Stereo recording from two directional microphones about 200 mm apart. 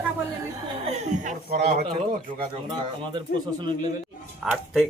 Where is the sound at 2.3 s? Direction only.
25° right (ahead or behind).